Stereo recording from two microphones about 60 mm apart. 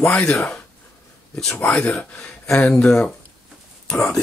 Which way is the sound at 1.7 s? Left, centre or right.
Centre.